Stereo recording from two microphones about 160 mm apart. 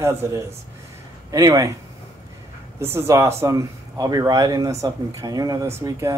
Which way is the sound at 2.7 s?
15° right (ahead or behind).